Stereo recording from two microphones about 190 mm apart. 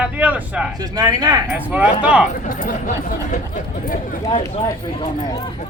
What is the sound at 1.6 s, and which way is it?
Speech, 10° right (ahead or behind).